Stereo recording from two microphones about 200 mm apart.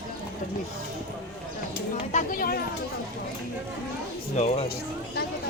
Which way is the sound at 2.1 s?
45° left (ahead or behind).